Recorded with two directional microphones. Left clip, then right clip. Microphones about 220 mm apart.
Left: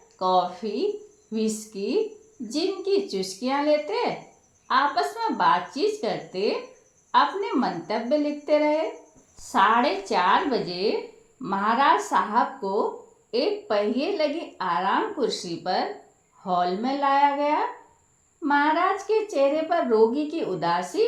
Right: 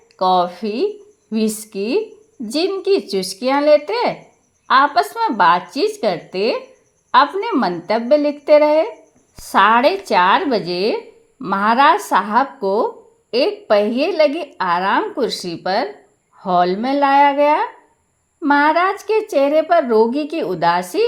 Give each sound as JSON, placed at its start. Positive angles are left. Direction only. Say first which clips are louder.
{"t": 0.2, "sound": "speech", "louder": "right 7 dB", "side_deg": -45}